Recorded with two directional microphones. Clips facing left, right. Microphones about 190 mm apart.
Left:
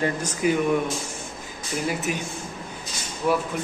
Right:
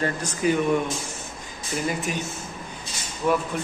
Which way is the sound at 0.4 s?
10° left (ahead or behind).